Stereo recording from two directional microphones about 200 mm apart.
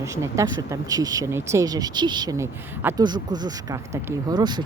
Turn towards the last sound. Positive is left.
turn(degrees=-20)  # may be behind; listen again after turning